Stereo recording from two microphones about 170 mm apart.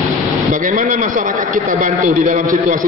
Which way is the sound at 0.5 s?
50° right (ahead or behind).